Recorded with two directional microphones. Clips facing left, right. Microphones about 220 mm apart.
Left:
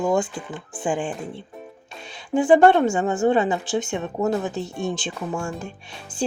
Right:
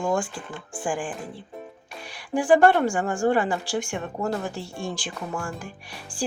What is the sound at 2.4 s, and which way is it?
Speech, 20° left (ahead or behind).